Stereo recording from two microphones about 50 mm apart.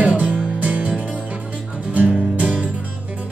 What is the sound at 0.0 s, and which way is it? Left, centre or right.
Music, right.